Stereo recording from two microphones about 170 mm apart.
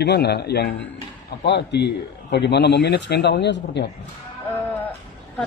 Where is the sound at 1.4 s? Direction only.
85° left.